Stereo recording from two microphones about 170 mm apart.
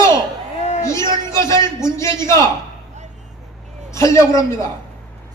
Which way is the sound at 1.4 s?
15° left (ahead or behind).